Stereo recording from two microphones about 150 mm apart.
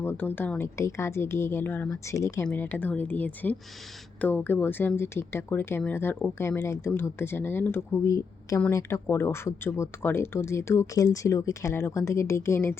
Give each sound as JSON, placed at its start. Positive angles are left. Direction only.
{"t": 0.0, "sound": "speech", "side_deg": 15}